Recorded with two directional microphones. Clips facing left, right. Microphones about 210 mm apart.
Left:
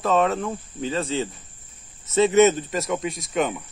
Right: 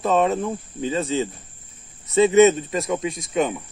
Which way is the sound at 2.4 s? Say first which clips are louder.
Right 2 dB; centre (ahead or behind).